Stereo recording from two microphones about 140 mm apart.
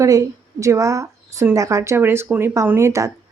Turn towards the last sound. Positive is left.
turn(degrees=-20)  # may be behind; listen again after turning